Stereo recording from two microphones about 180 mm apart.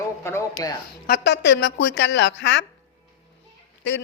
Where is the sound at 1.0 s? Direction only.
70° left (ahead or behind).